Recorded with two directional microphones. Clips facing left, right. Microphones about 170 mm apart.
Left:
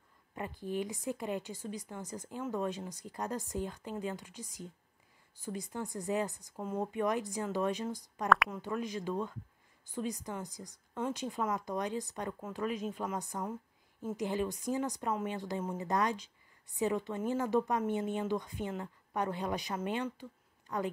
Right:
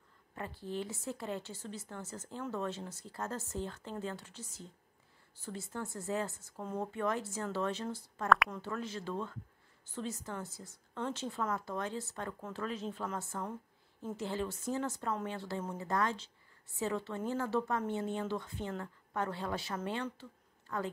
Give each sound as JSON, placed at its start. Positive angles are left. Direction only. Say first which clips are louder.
{"t": 0.3, "sound": "a woman's voice", "louder": "left 3 dB", "side_deg": 15}
{"t": 8.3, "sound": "a woman's voice", "louder": "even", "side_deg": 0}
{"t": 8.5, "sound": "a woman's voice", "louder": "left 3 dB", "side_deg": 15}